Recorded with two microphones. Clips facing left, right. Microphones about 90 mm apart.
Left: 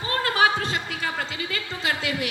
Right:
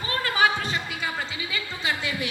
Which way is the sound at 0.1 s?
45° left (ahead or behind).